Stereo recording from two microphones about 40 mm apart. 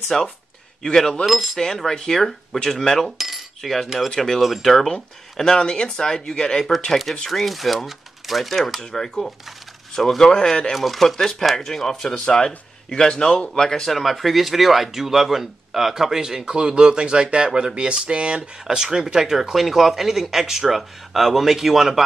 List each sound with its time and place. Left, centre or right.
0.1 s speech: centre
1.2 s speech: centre
1.9 s speech: centre
7.2 s speech: centre
9.0 s speech: centre
10.7 s speech: centre